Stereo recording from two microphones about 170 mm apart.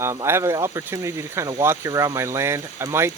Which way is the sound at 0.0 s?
15° right (ahead or behind).